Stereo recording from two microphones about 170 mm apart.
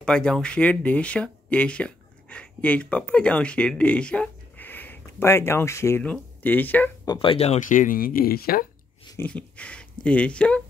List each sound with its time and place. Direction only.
0.0 s speech: 5° left (ahead or behind)
7.1 s speech: 30° left (ahead or behind); by 8.6 s 60° left (ahead or behind)
9.1 s speech: 10° left (ahead or behind)